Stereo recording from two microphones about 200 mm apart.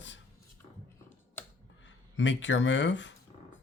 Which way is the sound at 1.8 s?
65° left (ahead or behind).